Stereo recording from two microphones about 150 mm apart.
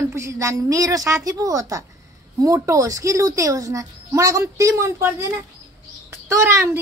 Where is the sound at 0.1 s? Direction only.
20° right (ahead or behind).